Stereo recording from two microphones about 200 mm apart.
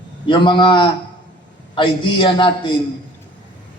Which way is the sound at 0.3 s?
25° left (ahead or behind).